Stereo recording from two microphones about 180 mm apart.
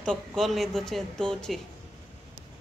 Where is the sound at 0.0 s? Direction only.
5° left (ahead or behind).